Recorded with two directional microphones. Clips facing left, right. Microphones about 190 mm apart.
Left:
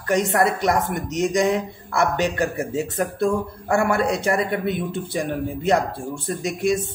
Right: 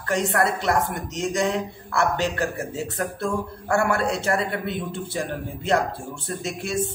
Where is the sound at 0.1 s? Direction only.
15° left (ahead or behind).